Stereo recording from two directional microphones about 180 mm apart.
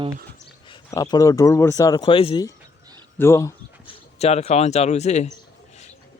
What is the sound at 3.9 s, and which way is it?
Speech, 35° left (ahead or behind).